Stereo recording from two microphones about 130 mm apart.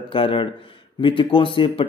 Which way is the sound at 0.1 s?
45° left (ahead or behind).